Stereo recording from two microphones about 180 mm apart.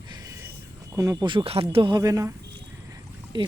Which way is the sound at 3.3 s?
25° right (ahead or behind).